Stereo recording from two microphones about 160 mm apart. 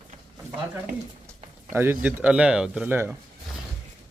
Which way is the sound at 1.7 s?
15° right (ahead or behind).